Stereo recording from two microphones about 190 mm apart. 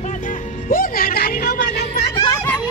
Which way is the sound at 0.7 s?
50° left (ahead or behind).